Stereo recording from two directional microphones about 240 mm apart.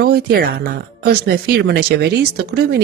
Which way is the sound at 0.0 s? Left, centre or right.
Right.